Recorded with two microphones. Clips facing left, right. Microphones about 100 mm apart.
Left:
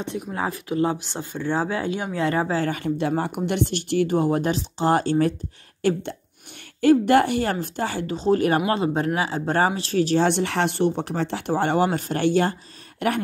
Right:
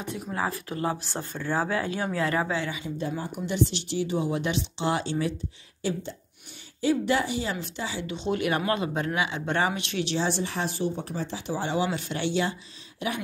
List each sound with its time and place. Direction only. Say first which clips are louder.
0.0 s speech: left 3 dB; 20° left (ahead or behind); by 2.8 s 40° left (ahead or behind)
2.8 s speech: left 8 dB; 70° left (ahead or behind); by 10.2 s 40° left (ahead or behind)
10.2 s speech: left 7 dB; 65° left (ahead or behind)